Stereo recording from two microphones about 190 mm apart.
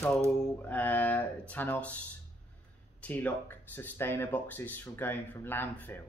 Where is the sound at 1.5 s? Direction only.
10° left (ahead or behind).